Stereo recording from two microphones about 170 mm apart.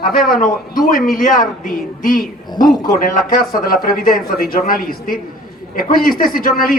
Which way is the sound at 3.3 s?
60° left (ahead or behind).